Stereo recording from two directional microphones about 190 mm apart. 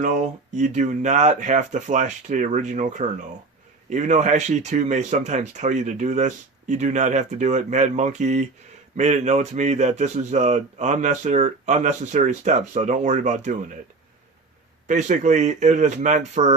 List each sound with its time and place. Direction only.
0.0 s speech: 40° right (ahead or behind)
14.8 s speech: 40° right (ahead or behind)